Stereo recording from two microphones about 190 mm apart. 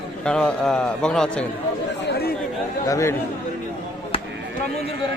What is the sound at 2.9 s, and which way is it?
Speech, 15° left (ahead or behind).